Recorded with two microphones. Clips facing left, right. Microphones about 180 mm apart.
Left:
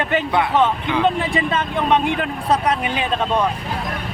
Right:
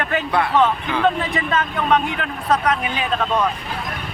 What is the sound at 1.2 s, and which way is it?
A man's voice, 25° left (ahead or behind).